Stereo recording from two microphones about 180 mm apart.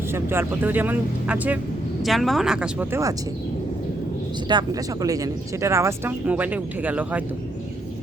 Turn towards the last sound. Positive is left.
turn(degrees=-10)  # may be behind; listen again after turning